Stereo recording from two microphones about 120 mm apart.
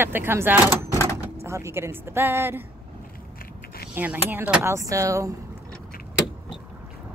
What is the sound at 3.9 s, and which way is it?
Speech, 15° right (ahead or behind).